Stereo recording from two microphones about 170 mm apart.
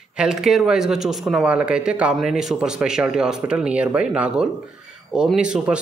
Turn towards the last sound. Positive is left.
turn(degrees=-5)  # may be behind; listen again after turning